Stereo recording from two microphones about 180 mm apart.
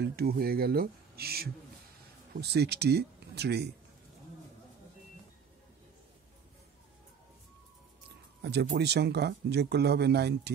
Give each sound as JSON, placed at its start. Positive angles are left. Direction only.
{"t": 0.0, "sound": "speech", "side_deg": -60}
{"t": 8.4, "sound": "speech", "side_deg": -65}